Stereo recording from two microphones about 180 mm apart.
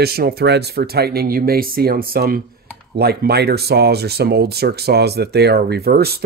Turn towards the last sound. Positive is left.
turn(degrees=-60)  # may be behind; listen again after turning